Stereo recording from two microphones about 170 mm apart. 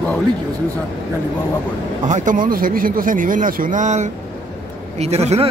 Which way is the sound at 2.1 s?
50° right (ahead or behind).